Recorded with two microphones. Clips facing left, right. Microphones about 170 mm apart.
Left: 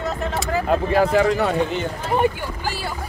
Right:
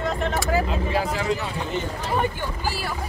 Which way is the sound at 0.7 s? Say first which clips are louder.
Left 7 dB; 55° left (ahead or behind).